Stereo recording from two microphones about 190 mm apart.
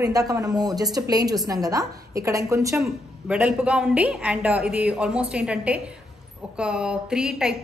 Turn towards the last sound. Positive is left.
turn(degrees=-5)  # may be behind; listen again after turning